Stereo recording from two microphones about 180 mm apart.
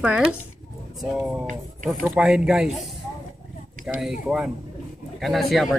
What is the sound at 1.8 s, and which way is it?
Speech, 5° right (ahead or behind).